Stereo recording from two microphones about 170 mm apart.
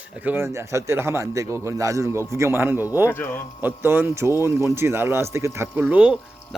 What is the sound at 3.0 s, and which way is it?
Speech, 15° left (ahead or behind).